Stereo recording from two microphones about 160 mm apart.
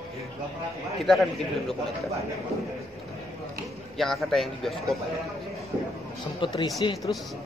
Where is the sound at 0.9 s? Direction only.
Centre (ahead or behind).